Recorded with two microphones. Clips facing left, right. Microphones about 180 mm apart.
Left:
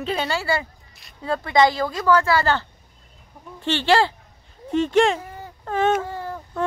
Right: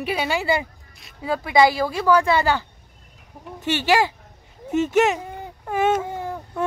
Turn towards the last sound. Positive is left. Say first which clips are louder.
# right 1 dB
turn(degrees=-10)  # may be behind; listen again after turning